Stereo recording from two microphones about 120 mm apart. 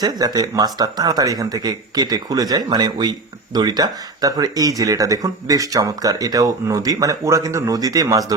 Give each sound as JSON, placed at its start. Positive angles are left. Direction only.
{"t": 0.0, "sound": "speech", "side_deg": -35}